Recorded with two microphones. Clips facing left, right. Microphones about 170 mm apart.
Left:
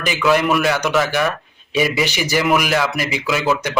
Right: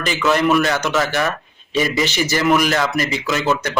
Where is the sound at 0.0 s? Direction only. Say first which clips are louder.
Left 1 dB; 10° left (ahead or behind).